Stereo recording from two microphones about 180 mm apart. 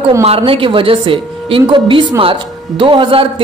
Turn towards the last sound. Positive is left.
turn(degrees=-30)  # may be behind; listen again after turning